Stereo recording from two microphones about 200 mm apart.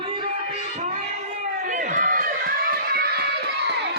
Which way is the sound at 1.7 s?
40° right (ahead or behind).